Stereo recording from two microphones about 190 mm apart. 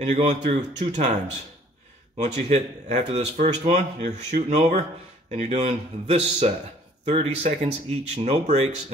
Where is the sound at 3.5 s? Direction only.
35° right (ahead or behind).